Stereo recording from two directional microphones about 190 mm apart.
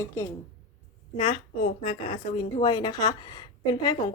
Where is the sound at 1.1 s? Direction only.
25° left (ahead or behind).